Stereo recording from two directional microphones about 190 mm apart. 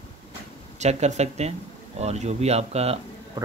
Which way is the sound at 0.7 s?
35° right (ahead or behind).